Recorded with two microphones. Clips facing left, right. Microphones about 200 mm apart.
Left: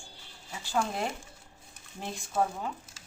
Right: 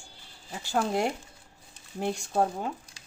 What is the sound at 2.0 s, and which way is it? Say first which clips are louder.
Speech: right 9 dB; 70° right (ahead or behind).